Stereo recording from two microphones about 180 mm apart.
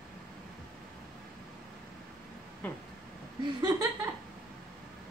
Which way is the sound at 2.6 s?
10° left (ahead or behind).